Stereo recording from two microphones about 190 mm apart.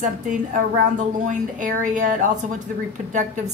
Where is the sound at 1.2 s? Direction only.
40° right (ahead or behind).